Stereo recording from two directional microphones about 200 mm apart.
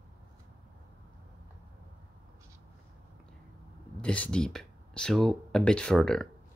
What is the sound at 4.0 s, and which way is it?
Speech, 5° left (ahead or behind).